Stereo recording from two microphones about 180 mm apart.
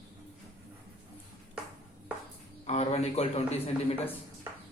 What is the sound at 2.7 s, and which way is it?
A man's voice, 35° left (ahead or behind).